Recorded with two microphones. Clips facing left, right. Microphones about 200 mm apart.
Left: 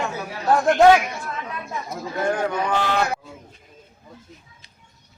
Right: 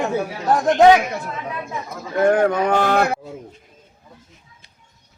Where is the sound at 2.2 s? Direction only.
60° right (ahead or behind).